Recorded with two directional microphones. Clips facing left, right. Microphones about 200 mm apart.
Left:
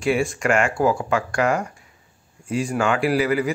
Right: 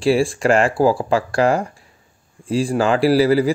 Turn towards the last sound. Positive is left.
turn(degrees=-35)  # may be behind; listen again after turning